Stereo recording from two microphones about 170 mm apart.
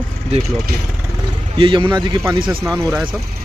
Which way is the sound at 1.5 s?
30° right (ahead or behind).